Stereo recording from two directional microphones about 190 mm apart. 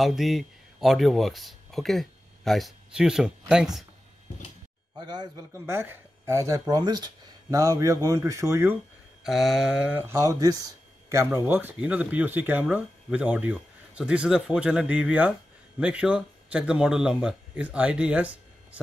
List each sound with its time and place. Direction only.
0.0 s speech: centre (ahead or behind)
4.9 s speech: 20° right (ahead or behind)
9.2 s speech: centre (ahead or behind)